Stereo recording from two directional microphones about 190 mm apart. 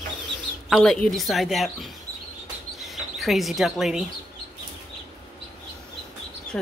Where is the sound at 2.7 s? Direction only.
Centre (ahead or behind).